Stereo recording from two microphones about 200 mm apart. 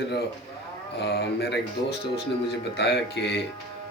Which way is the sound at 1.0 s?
55° left (ahead or behind).